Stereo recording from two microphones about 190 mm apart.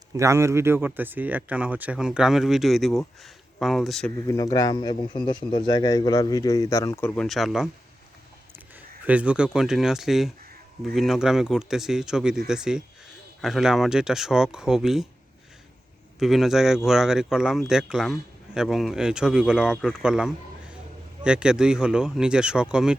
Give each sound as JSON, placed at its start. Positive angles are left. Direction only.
{"t": 0.1, "sound": "speech", "side_deg": -15}
{"t": 4.3, "sound": "speech", "side_deg": 20}
{"t": 9.0, "sound": "speech", "side_deg": -5}
{"t": 16.2, "sound": "speech", "side_deg": 0}